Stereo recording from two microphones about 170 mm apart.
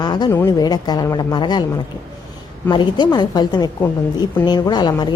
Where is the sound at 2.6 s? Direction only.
25° left (ahead or behind).